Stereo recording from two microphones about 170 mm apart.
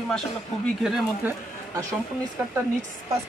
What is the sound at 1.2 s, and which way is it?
Speech, 10° right (ahead or behind).